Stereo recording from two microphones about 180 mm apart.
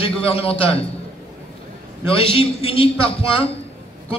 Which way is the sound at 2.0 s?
30° left (ahead or behind).